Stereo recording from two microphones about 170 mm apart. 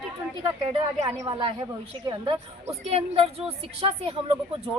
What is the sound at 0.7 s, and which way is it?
A woman's voice, 25° right (ahead or behind).